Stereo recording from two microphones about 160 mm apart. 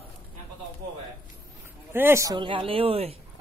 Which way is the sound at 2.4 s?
35° right (ahead or behind).